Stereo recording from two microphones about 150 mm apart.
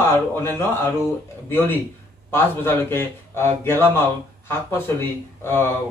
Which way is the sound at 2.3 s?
15° left (ahead or behind).